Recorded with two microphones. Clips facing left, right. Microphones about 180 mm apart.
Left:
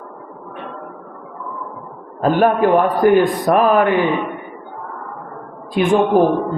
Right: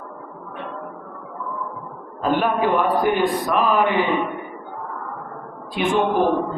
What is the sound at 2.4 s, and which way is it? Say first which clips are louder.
A man's voice: left 8 dB; 50° left (ahead or behind).